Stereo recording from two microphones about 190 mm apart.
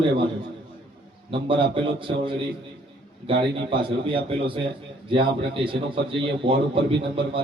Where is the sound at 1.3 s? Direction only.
25° right (ahead or behind).